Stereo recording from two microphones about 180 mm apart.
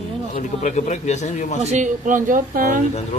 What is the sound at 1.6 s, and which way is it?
Speech, 40° right (ahead or behind).